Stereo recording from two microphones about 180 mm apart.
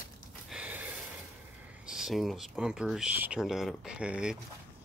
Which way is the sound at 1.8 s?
5° right (ahead or behind).